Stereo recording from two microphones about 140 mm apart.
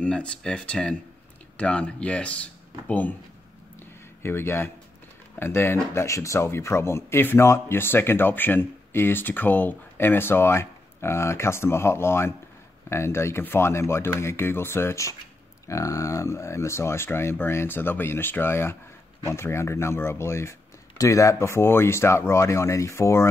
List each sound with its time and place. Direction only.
0.0 s speech: 10° left (ahead or behind)
4.2 s speech: 15° left (ahead or behind)